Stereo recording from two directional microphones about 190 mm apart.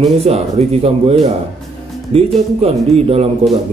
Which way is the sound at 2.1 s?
30° right (ahead or behind).